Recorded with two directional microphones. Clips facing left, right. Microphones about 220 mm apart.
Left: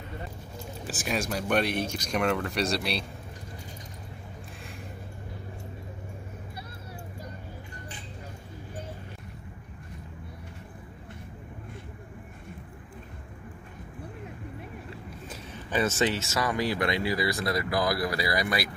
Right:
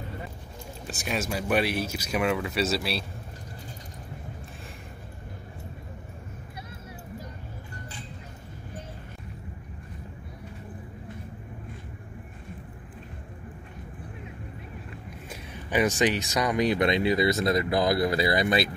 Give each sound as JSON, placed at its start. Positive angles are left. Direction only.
{"t": 0.8, "sound": "speech", "side_deg": 0}
{"t": 15.2, "sound": "speech", "side_deg": -15}